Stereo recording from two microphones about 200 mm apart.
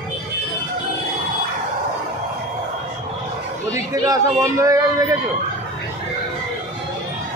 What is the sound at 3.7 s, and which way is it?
Speech, 15° right (ahead or behind).